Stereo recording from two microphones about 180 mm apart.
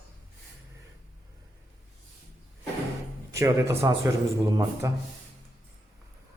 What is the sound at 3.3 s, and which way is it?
Speech, 15° right (ahead or behind).